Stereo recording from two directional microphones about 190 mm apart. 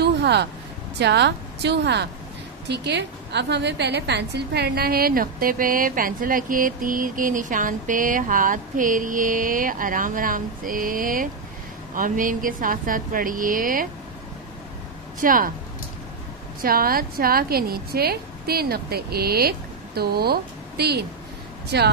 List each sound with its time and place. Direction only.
0.0 s vehicle: 60° right (ahead or behind)
0.9 s a woman's voice: 60° right (ahead or behind); by 13.8 s 45° right (ahead or behind)
15.1 s a woman's voice: 45° right (ahead or behind)
16.6 s a woman's voice: 50° right (ahead or behind)